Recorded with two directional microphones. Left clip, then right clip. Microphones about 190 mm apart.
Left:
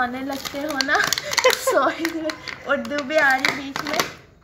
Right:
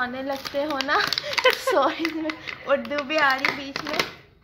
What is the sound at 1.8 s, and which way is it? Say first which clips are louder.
A woman's voice: left 2 dB; 20° right (ahead or behind).